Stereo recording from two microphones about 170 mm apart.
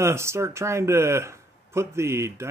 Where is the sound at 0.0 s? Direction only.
15° right (ahead or behind).